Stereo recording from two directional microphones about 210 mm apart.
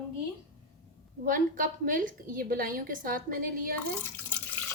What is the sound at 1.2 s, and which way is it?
A woman's voice, 40° right (ahead or behind).